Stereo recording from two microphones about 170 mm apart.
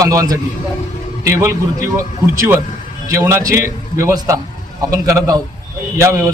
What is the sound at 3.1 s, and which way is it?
A man's voice, 15° right (ahead or behind).